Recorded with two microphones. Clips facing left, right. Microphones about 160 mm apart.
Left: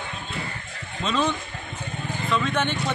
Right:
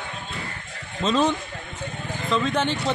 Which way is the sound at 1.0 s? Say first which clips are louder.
Right 3 dB; 40° right (ahead or behind).